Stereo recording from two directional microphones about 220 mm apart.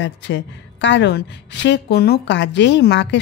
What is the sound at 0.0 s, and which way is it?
A woman's voice, 55° left (ahead or behind).